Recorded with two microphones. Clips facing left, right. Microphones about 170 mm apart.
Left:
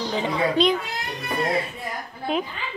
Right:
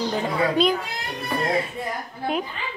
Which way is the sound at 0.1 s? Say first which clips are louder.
Left 3 dB; centre (ahead or behind).